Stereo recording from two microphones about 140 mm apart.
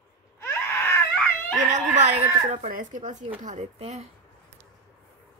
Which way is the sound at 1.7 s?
60° right (ahead or behind).